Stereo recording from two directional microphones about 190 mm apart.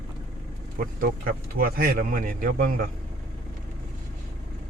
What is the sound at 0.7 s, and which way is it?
Speech, 50° right (ahead or behind).